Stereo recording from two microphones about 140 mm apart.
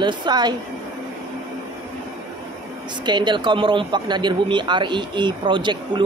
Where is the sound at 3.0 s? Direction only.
35° right (ahead or behind).